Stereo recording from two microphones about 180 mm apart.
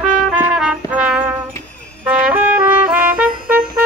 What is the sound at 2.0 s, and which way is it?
Trumpet, 10° right (ahead or behind).